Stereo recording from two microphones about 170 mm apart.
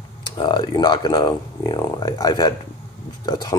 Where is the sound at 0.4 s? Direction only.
25° left (ahead or behind).